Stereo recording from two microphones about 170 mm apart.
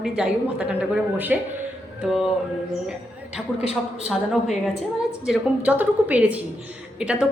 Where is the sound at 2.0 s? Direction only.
Centre (ahead or behind).